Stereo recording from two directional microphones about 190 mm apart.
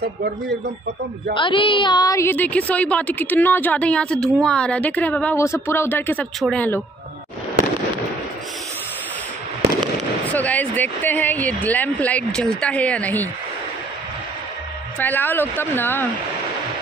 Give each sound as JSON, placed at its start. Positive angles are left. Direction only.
{"t": 0.0, "sound": "speech", "side_deg": -60}
{"t": 1.3, "sound": "a woman's voice", "side_deg": 25}
{"t": 10.3, "sound": "a woman's voice", "side_deg": 10}
{"t": 15.0, "sound": "a woman's voice", "side_deg": 10}